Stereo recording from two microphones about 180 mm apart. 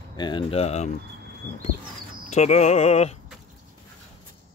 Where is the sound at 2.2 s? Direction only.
40° left (ahead or behind).